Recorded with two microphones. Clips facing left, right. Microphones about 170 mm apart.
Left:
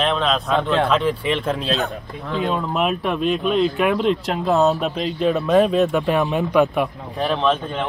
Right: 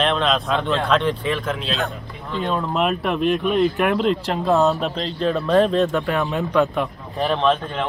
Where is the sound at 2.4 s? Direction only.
Centre (ahead or behind).